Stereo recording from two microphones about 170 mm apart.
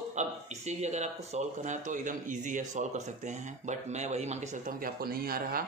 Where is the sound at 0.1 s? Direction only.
40° right (ahead or behind); by 5.6 s 60° right (ahead or behind).